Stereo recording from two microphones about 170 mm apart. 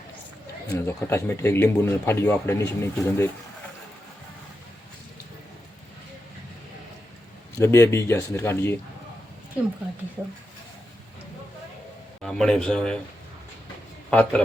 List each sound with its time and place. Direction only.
0.7 s speech: 15° left (ahead or behind)
7.6 s speech: 15° left (ahead or behind)
12.2 s a man's voice: 5° left (ahead or behind)
14.1 s speech: 10° left (ahead or behind)